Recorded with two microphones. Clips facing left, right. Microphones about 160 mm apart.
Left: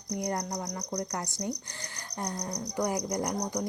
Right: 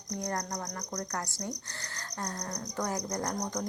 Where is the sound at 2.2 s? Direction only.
15° left (ahead or behind).